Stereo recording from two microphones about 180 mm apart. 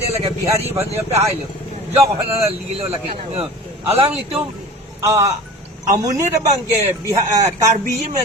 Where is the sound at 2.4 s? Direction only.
35° right (ahead or behind).